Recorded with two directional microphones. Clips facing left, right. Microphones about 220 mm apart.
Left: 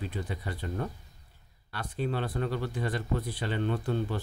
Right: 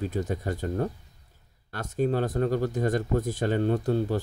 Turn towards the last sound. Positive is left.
turn(degrees=-40)  # may be behind; listen again after turning